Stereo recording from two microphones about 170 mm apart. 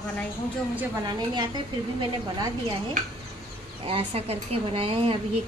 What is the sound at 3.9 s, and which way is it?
Speech, 35° right (ahead or behind).